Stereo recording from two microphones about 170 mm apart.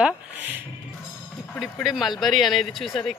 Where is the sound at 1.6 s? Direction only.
Centre (ahead or behind).